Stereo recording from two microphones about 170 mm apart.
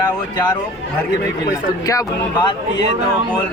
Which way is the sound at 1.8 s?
20° left (ahead or behind).